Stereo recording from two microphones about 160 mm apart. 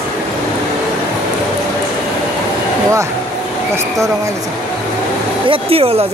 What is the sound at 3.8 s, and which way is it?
Speech, 20° right (ahead or behind).